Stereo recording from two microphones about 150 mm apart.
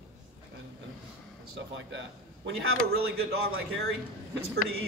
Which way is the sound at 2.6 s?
90° right.